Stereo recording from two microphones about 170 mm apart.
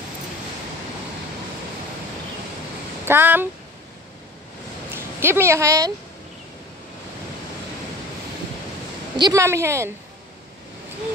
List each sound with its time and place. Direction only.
3.1 s a woman's voice: 10° right (ahead or behind)
4.9 s speech: 15° right (ahead or behind)
9.2 s a woman's voice: 15° right (ahead or behind)